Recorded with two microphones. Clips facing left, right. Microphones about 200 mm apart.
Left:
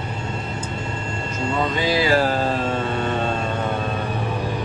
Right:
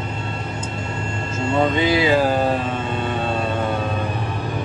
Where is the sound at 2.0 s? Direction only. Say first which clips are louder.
Right 2 dB; 15° right (ahead or behind).